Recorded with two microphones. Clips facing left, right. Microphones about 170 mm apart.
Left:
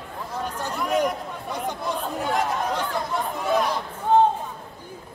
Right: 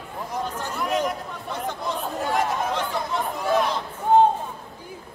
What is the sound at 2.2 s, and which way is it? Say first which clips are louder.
Chatter: right 1 dB; centre (ahead or behind).